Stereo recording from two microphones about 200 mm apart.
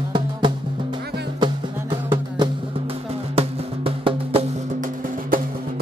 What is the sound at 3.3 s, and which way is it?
Music, 30° right (ahead or behind).